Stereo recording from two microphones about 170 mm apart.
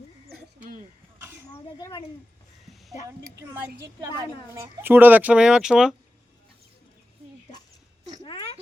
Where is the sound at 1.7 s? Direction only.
20° left (ahead or behind).